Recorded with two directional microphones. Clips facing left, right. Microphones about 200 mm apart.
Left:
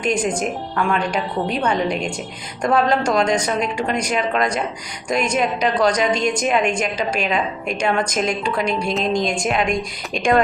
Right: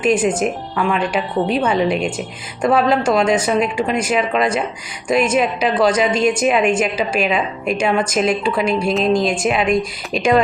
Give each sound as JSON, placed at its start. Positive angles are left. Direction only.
{"t": 0.0, "sound": "a woman's voice", "side_deg": -5}